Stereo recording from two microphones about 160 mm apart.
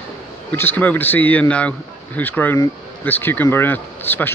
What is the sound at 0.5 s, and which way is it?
Speech, 10° left (ahead or behind).